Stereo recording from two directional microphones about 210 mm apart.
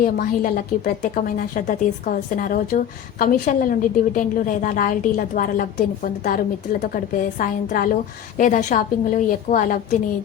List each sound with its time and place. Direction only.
0.0 s a woman's voice: 40° left (ahead or behind)